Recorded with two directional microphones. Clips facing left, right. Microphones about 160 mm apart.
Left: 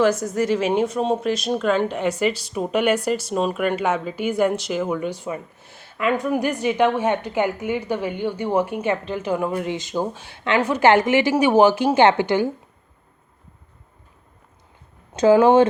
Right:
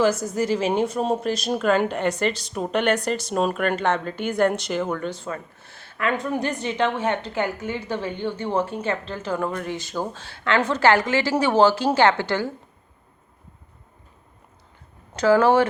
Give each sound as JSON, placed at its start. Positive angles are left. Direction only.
{"t": 0.0, "sound": "speech", "side_deg": 0}
{"t": 15.1, "sound": "speech", "side_deg": 20}